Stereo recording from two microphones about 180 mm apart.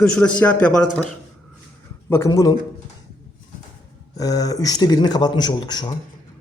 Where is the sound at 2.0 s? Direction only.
15° left (ahead or behind).